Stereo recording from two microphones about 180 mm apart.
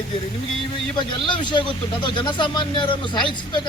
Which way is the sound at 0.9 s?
25° left (ahead or behind).